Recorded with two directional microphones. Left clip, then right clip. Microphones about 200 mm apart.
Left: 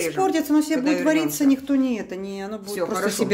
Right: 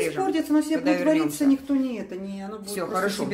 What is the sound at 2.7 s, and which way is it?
Speech, centre (ahead or behind).